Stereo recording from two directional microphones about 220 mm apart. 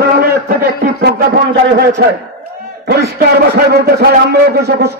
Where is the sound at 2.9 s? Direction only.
45° right (ahead or behind).